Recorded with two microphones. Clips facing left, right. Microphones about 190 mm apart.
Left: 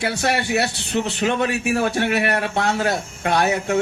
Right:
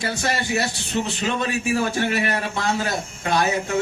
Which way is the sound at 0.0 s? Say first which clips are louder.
Left 3 dB; 65° left (ahead or behind).